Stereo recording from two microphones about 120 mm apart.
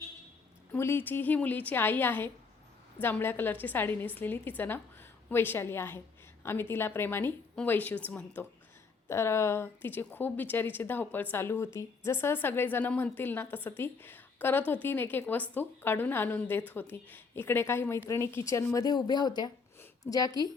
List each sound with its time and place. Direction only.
0.7 s a woman's voice: 20° left (ahead or behind)